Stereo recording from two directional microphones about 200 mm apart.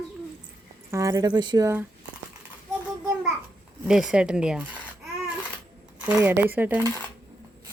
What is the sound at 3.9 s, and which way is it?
Speech, 5° right (ahead or behind).